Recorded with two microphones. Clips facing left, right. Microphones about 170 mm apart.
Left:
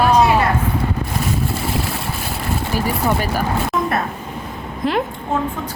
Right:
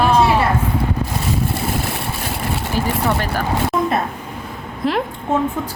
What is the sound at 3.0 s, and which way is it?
Speech, 10° left (ahead or behind).